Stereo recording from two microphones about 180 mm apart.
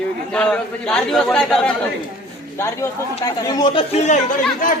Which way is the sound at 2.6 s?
15° left (ahead or behind).